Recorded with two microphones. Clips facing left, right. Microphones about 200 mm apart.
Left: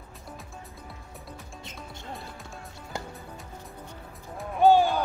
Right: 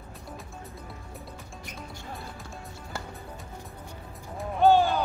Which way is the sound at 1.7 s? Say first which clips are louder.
Right 3 dB; 25° left (ahead or behind).